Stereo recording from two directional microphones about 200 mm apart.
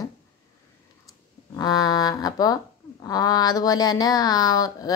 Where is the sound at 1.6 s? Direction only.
20° left (ahead or behind).